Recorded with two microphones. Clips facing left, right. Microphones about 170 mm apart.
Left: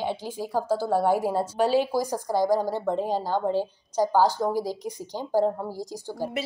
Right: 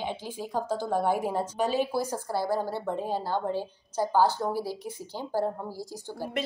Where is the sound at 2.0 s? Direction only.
15° left (ahead or behind).